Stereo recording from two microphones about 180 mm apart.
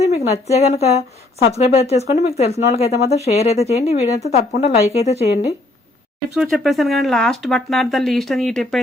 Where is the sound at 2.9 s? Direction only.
60° left (ahead or behind).